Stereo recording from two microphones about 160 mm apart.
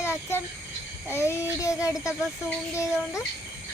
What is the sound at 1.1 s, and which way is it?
Child singing, 15° left (ahead or behind).